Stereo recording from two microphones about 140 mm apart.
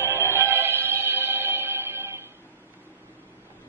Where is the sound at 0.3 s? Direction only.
15° right (ahead or behind).